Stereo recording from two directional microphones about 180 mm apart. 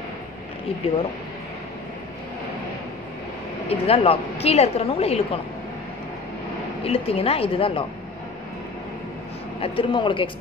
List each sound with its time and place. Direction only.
3.6 s a woman's voice: 35° left (ahead or behind)
6.8 s a woman's voice: 30° left (ahead or behind)
9.6 s speech: 30° left (ahead or behind)